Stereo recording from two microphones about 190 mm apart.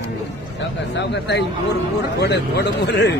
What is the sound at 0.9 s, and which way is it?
A man's voice, 65° left (ahead or behind).